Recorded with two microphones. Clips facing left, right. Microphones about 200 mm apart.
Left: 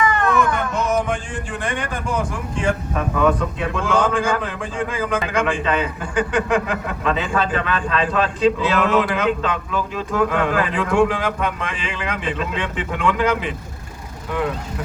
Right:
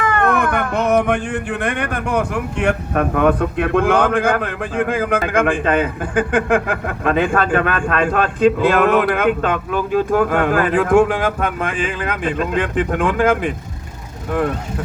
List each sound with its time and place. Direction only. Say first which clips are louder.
0.0 s speech: right 1 dB; 60° right (ahead or behind)